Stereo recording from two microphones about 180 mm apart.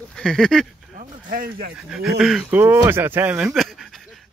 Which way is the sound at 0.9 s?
50° right (ahead or behind).